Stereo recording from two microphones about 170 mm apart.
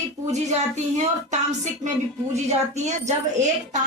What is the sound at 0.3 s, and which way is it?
Speech, 45° right (ahead or behind).